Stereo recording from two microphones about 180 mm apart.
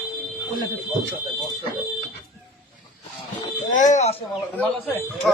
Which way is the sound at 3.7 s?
45° left (ahead or behind).